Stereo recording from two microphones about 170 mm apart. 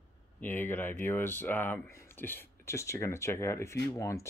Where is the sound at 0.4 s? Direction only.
10° left (ahead or behind).